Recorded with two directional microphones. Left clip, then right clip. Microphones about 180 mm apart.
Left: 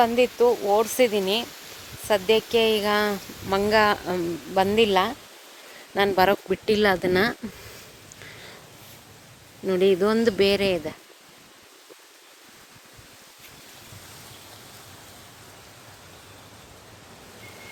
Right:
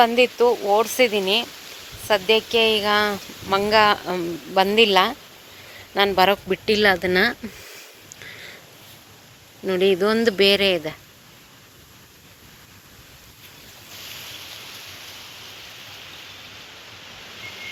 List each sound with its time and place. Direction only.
0.0 s a woman's voice: 10° left (ahead or behind)
0.3 s speech: centre (ahead or behind)
0.8 s a woman's voice: 20° left (ahead or behind)
6.1 s speech: 20° left (ahead or behind)
9.6 s a woman's voice: 15° left (ahead or behind)